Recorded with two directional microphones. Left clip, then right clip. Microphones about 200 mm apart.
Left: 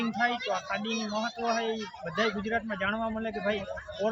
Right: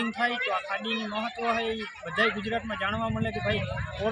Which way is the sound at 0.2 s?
15° left (ahead or behind).